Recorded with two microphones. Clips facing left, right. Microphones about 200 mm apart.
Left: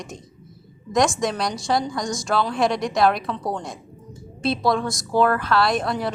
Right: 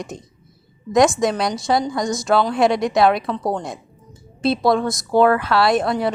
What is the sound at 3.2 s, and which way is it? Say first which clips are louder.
Speech: right 4 dB; 35° right (ahead or behind).